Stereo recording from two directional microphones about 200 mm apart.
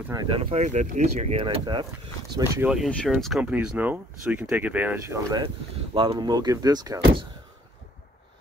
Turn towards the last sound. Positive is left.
turn(degrees=-20)  # may be behind; listen again after turning